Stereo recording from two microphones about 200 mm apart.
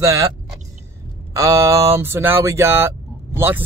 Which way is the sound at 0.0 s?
15° right (ahead or behind).